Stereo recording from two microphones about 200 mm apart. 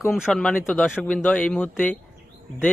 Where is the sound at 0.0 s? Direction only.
Centre (ahead or behind).